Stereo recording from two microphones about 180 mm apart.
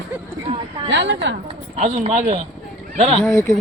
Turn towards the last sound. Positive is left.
turn(degrees=15)  # may be behind; listen again after turning